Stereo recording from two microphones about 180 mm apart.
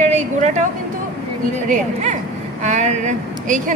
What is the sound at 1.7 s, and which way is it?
Speech, 45° right (ahead or behind).